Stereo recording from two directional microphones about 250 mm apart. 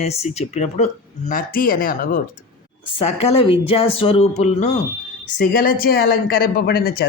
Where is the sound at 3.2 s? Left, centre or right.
Left.